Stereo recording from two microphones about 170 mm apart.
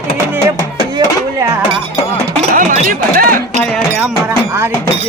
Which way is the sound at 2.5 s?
55° right (ahead or behind).